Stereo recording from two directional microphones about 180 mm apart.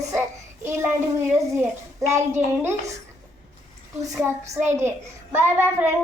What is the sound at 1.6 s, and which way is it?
Speech, 15° right (ahead or behind).